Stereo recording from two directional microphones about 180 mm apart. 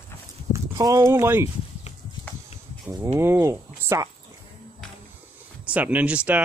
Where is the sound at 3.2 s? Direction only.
15° right (ahead or behind).